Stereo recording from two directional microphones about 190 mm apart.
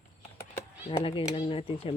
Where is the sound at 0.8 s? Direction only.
30° left (ahead or behind).